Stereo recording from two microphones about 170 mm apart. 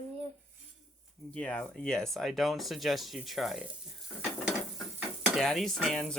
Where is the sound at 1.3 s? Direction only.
10° left (ahead or behind).